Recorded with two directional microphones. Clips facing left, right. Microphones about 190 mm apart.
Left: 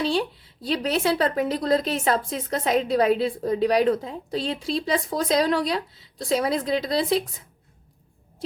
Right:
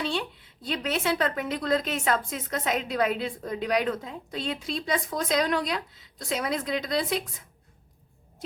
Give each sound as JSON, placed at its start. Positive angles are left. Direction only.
{"t": 0.0, "sound": "a woman's voice", "side_deg": 35}